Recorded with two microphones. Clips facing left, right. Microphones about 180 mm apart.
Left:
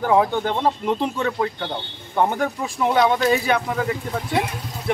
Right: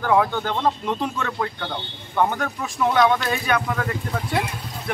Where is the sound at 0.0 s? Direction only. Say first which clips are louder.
Left 2 dB; 30° left (ahead or behind).